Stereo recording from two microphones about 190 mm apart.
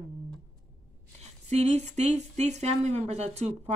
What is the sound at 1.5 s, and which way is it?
Speech, 35° right (ahead or behind).